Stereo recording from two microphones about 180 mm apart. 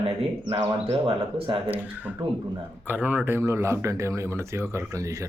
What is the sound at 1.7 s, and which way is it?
Speech, 10° right (ahead or behind).